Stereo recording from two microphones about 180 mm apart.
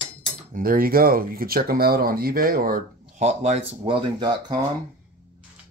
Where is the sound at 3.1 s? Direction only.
40° right (ahead or behind).